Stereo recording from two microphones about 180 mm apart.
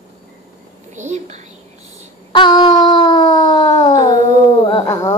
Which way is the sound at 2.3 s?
25° left (ahead or behind).